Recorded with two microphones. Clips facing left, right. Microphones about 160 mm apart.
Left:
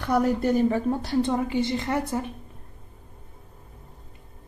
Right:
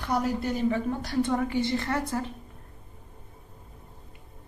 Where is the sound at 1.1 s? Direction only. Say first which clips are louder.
Left 2 dB; 25° left (ahead or behind).